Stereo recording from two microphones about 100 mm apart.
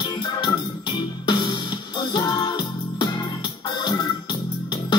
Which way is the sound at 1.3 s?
50° left (ahead or behind).